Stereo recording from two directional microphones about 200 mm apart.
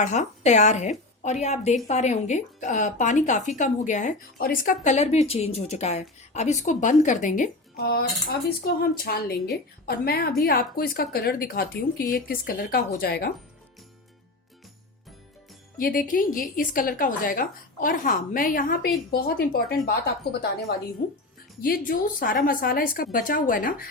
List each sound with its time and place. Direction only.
0.0 s speech: 35° left (ahead or behind)
7.8 s a woman's voice: 50° left (ahead or behind)
15.8 s a woman's voice: 45° left (ahead or behind)
21.6 s a woman's voice: 45° left (ahead or behind)